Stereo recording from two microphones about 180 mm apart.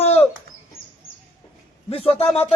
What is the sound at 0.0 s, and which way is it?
Bird, 35° left (ahead or behind).